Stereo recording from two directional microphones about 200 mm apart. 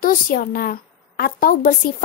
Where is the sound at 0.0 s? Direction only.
45° left (ahead or behind).